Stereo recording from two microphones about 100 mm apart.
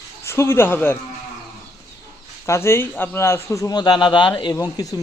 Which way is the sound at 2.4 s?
25° left (ahead or behind).